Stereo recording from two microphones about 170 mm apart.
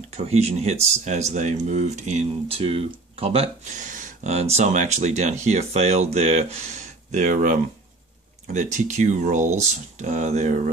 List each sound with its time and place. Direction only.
0.1 s speech: 40° right (ahead or behind)
8.5 s speech: 45° right (ahead or behind)